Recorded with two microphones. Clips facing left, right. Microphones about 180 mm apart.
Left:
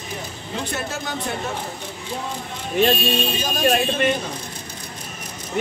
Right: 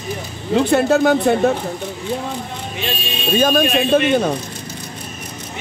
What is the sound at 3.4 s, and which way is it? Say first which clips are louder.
Speech: right 8 dB; 60° right (ahead or behind).